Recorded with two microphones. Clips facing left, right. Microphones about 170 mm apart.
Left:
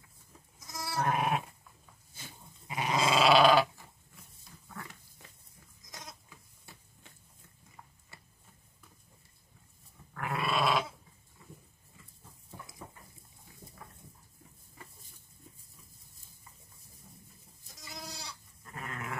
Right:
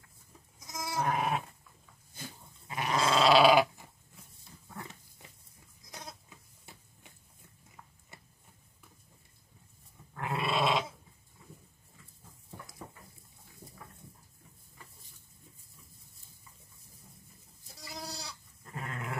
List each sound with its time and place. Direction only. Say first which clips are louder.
0.7 s goat: even; 15° right (ahead or behind)
1.0 s sheep: left 1 dB; 5° left (ahead or behind)
2.7 s goat: even; 15° left (ahead or behind)
3.2 s dog: right 1 dB; centre (ahead or behind)
4.2 s pig: right 2 dB; 25° right (ahead or behind)
6.0 s goat: right 2 dB; 20° right (ahead or behind)
10.1 s dog: even; 25° right (ahead or behind)
17.7 s goat: right 3 dB; 35° right (ahead or behind)